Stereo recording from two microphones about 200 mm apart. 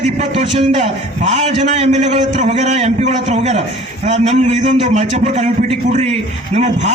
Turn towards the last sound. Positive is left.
turn(degrees=-35)  # may be behind; listen again after turning